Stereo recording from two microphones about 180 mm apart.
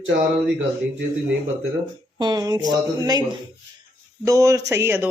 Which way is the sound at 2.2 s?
20° right (ahead or behind).